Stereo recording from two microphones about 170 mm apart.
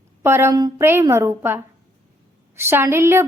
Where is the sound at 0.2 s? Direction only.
15° right (ahead or behind).